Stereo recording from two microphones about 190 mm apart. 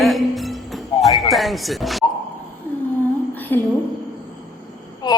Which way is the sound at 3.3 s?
10° left (ahead or behind).